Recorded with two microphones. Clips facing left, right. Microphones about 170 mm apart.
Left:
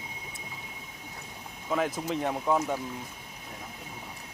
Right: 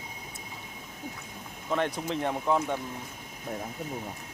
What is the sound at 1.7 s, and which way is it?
Speech, 5° left (ahead or behind).